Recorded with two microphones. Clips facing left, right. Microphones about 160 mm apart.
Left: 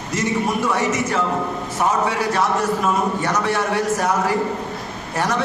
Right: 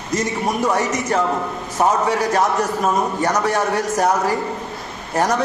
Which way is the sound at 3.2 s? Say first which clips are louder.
Right 2 dB; 40° right (ahead or behind).